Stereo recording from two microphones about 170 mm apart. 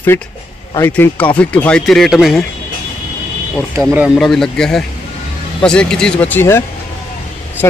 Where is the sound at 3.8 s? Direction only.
15° right (ahead or behind).